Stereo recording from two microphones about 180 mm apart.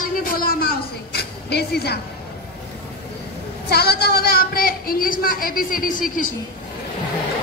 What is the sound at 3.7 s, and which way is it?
A woman's voice, 60° left (ahead or behind).